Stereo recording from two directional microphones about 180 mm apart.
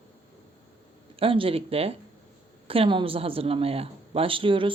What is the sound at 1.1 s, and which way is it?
A woman's voice, 30° right (ahead or behind).